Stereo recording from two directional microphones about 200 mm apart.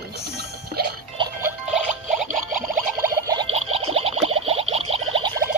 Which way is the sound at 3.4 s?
30° right (ahead or behind).